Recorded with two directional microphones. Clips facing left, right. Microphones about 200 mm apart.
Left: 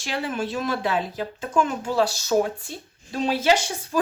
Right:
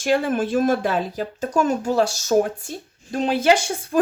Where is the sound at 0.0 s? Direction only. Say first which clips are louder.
Right 7 dB; 50° right (ahead or behind).